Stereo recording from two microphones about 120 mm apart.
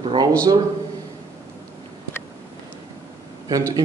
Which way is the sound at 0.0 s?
45° right (ahead or behind).